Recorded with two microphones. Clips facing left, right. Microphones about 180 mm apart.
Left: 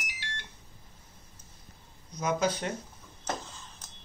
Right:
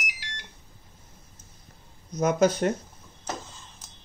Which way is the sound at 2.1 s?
45° right (ahead or behind).